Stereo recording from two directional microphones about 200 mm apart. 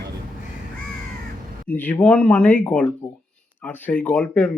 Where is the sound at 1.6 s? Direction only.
10° left (ahead or behind).